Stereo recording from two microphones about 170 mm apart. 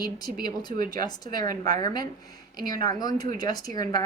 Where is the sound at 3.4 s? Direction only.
20° left (ahead or behind).